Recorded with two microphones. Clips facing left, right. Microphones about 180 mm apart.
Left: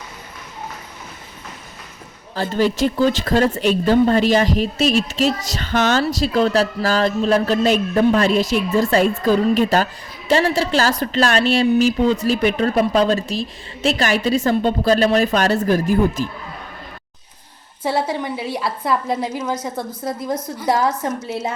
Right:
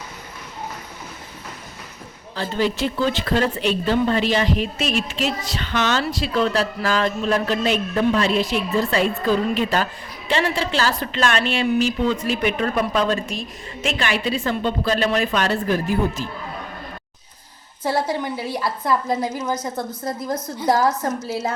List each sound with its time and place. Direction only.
2.3 s a woman's voice: 45° left (ahead or behind)
17.8 s a woman's voice: centre (ahead or behind)